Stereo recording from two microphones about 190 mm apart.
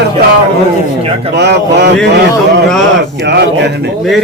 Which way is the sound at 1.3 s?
60° right (ahead or behind).